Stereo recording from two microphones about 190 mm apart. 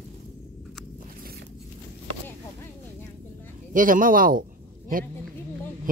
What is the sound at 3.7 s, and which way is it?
Speech, 45° right (ahead or behind).